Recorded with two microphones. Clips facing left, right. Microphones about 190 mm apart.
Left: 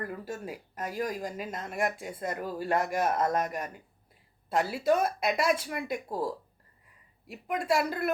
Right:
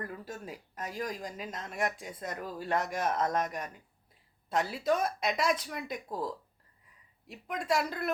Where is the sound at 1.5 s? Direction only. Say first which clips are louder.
Left 4 dB; 50° left (ahead or behind).